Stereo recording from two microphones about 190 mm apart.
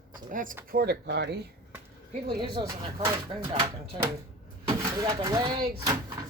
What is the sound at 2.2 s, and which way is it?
Speech, 25° right (ahead or behind).